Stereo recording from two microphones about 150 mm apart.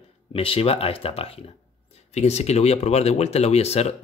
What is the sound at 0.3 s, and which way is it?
Speech, 40° left (ahead or behind).